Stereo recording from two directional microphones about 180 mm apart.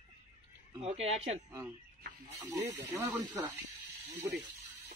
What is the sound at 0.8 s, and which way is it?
Speech, 35° right (ahead or behind).